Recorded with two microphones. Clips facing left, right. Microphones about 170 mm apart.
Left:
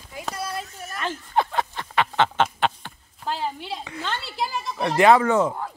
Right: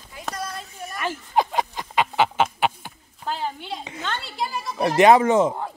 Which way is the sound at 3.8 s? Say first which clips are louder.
Left 1 dB; 20° right (ahead or behind).